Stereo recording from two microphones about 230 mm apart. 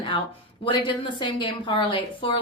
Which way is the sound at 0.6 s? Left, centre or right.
Left.